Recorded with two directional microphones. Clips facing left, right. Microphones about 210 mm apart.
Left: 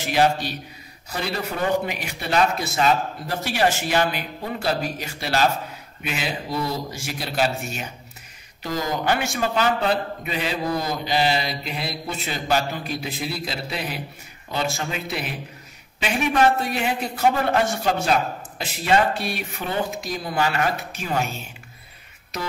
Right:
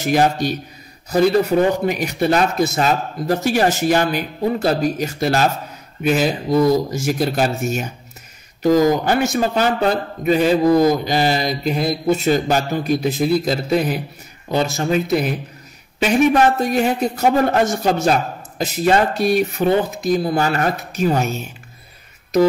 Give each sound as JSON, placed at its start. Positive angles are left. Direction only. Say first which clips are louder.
{"t": 0.0, "sound": "a man's voice", "louder": "right 4 dB", "side_deg": -45}
{"t": 1.9, "sound": "a man's voice", "louder": "right 10 dB", "side_deg": -45}